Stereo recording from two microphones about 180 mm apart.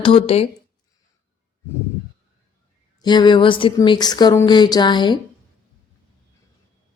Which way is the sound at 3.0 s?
25° left (ahead or behind).